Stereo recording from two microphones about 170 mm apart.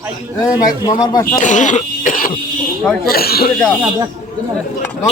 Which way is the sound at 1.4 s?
45° left (ahead or behind).